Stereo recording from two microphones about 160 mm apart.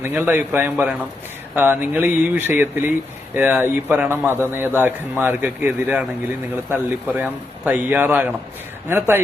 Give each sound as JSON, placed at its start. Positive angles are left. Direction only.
{"t": 0.0, "sound": "a man's voice", "side_deg": -10}